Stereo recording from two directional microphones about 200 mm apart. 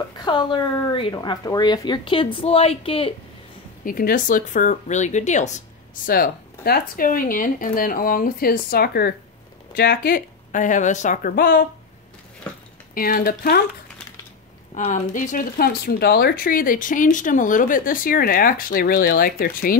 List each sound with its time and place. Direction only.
0.2 s a woman's voice: 25° left (ahead or behind)
3.8 s speech: 45° left (ahead or behind)
6.0 s speech: 45° left (ahead or behind)
12.9 s speech: 45° left (ahead or behind)
14.7 s speech: 35° left (ahead or behind)